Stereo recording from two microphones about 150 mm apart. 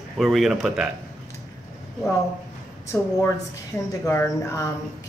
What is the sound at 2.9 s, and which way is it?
A woman's voice, 15° left (ahead or behind).